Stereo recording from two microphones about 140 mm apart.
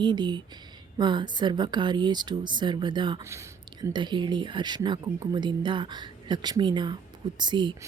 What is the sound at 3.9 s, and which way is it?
Speech, 35° right (ahead or behind).